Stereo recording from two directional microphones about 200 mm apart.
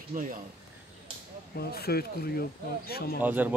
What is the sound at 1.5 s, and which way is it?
Speech, 50° left (ahead or behind).